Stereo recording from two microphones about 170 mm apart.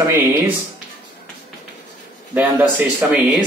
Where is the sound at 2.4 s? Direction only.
10° right (ahead or behind).